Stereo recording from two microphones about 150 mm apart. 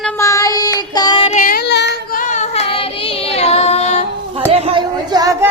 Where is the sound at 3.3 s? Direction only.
45° left (ahead or behind).